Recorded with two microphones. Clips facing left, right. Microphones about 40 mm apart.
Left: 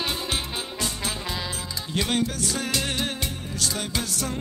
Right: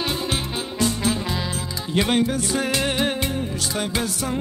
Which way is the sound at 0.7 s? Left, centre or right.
Right.